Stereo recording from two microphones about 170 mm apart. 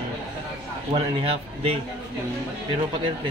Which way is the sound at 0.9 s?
35° right (ahead or behind).